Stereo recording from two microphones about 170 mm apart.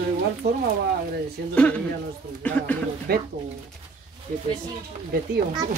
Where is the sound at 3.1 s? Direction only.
65° right (ahead or behind).